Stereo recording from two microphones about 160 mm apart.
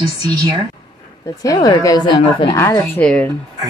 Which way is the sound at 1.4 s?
20° left (ahead or behind).